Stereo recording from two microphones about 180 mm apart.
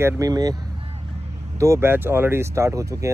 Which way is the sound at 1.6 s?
15° right (ahead or behind).